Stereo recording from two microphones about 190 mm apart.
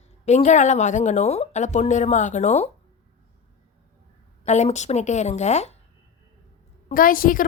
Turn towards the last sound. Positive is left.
turn(degrees=45)  # may be behind; listen again after turning